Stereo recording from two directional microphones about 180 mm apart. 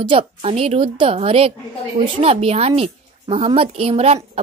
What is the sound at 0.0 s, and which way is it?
Speech, 30° right (ahead or behind).